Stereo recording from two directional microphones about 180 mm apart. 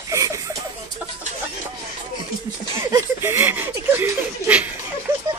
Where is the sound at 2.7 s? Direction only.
15° right (ahead or behind).